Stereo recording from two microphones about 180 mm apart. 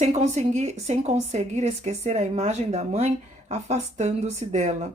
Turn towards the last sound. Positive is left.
turn(degrees=-40)  # may be behind; listen again after turning